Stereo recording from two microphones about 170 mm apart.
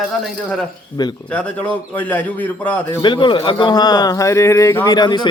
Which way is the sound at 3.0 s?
30° left (ahead or behind).